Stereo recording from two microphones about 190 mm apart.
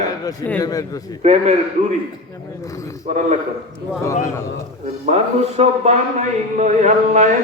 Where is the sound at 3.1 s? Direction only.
40° right (ahead or behind).